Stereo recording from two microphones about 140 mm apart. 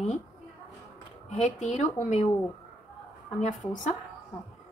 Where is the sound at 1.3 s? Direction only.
60° left (ahead or behind).